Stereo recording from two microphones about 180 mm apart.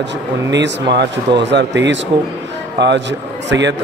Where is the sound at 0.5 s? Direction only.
75° right (ahead or behind).